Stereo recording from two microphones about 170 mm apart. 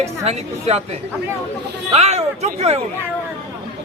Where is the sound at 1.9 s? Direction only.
40° right (ahead or behind).